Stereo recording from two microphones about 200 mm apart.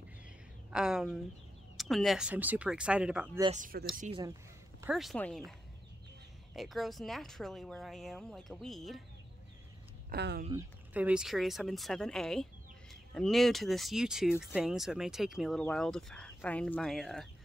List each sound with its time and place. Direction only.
0.7 s speech: 5° right (ahead or behind)
3.5 s speech: 45° right (ahead or behind)
4.8 s speech: centre (ahead or behind)
6.5 s speech: centre (ahead or behind)
10.0 s speech: 55° right (ahead or behind)
10.9 s speech: 5° right (ahead or behind)